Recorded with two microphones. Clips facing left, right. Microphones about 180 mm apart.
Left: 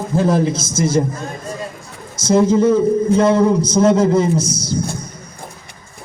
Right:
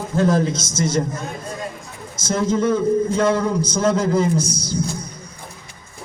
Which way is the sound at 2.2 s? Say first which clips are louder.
Left 7 dB; 30° left (ahead or behind).